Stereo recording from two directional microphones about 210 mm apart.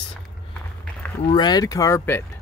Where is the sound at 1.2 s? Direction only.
20° left (ahead or behind).